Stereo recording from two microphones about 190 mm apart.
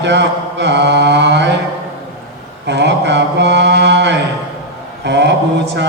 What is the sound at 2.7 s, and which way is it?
Mantra, 65° right (ahead or behind).